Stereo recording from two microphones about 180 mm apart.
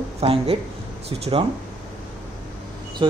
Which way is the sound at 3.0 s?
30° right (ahead or behind).